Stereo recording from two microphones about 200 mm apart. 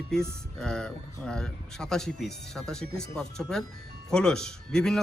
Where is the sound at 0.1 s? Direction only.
5° left (ahead or behind).